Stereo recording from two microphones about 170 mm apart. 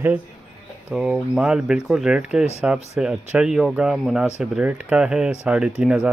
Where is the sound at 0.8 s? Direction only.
5° right (ahead or behind).